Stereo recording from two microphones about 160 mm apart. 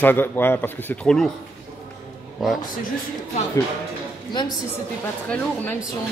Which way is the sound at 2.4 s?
Centre (ahead or behind).